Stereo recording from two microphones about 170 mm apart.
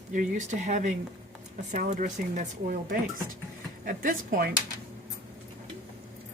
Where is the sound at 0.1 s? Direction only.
45° right (ahead or behind).